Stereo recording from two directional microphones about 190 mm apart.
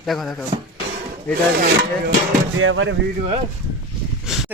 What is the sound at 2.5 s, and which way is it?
Speech, 90° right.